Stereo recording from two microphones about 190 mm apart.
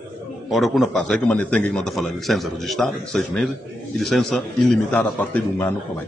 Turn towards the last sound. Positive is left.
turn(degrees=5)  # may be behind; listen again after turning